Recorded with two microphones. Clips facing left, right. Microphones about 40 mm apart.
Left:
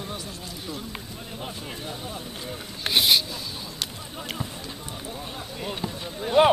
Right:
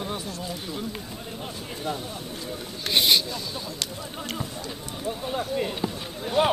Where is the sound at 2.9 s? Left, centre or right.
Centre.